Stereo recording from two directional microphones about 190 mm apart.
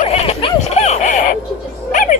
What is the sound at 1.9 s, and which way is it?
Music, 45° left (ahead or behind).